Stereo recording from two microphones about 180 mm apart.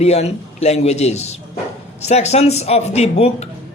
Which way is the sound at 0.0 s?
35° left (ahead or behind).